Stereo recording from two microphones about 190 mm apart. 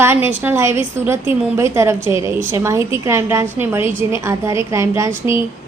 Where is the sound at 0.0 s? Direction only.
10° right (ahead or behind).